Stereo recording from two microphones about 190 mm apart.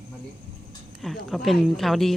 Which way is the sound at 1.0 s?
Centre (ahead or behind).